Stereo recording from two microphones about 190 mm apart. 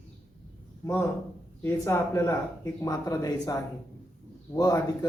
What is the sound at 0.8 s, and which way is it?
Speech, 15° left (ahead or behind).